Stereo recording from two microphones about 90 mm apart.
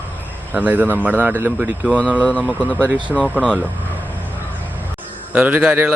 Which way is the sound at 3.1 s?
10° right (ahead or behind).